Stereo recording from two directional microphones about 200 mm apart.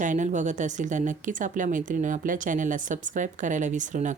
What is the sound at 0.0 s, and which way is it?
Speech, 40° right (ahead or behind).